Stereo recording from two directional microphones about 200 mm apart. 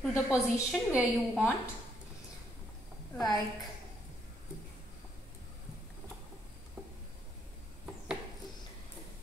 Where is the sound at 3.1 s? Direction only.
20° left (ahead or behind).